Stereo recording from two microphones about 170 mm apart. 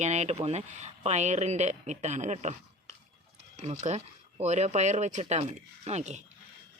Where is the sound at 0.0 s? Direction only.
40° right (ahead or behind).